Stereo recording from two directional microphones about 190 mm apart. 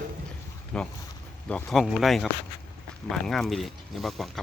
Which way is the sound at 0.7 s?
5° left (ahead or behind).